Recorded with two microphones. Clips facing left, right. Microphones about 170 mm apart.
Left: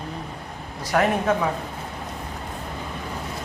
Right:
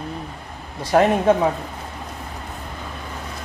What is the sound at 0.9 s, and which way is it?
Speech, 25° right (ahead or behind).